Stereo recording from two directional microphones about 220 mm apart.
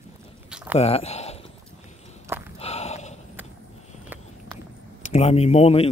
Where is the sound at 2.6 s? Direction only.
30° left (ahead or behind).